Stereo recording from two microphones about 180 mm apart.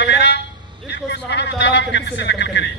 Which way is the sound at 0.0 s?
70° left (ahead or behind).